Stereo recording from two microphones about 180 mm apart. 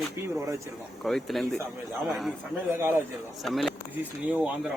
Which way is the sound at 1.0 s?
Centre (ahead or behind).